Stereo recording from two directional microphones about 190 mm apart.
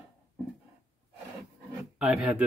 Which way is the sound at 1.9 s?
5° right (ahead or behind).